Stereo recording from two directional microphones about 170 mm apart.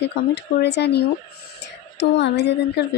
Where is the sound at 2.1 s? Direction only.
90° left.